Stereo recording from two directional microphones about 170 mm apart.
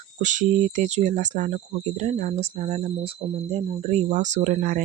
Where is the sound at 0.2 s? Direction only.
45° right (ahead or behind).